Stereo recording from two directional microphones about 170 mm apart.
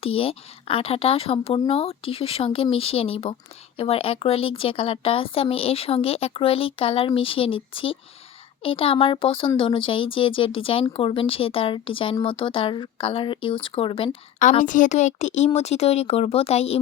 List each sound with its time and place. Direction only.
0.0 s a woman's voice: 35° left (ahead or behind)
14.6 s a woman's voice: 50° left (ahead or behind)